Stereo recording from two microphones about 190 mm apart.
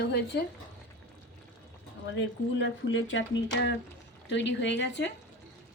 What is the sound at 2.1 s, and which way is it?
Speech, 75° left (ahead or behind).